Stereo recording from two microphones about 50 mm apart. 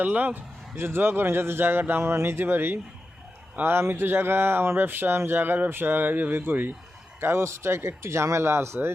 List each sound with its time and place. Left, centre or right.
0.0 s speech: right
7.2 s speech: right